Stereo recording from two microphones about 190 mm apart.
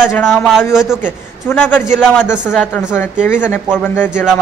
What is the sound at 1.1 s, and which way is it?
A man's voice, 10° left (ahead or behind).